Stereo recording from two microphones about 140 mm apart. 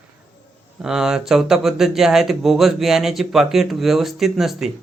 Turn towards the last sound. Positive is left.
turn(degrees=0)  # may be behind; listen again after turning